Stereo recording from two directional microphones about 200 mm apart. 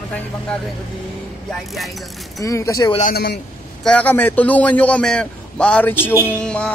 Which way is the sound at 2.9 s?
40° left (ahead or behind).